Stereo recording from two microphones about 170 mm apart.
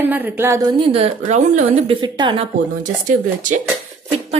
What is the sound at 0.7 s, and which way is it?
A woman's voice, 35° right (ahead or behind).